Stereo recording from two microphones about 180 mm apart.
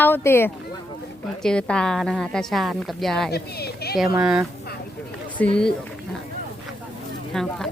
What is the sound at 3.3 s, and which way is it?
Speech, 60° left (ahead or behind).